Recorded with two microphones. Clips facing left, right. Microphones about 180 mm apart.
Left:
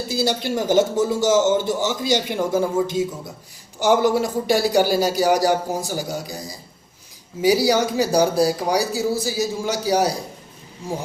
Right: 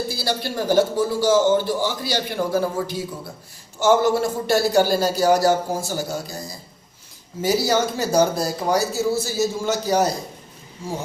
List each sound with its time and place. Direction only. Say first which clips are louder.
0.1 s a man's voice: left 4 dB; 20° left (ahead or behind)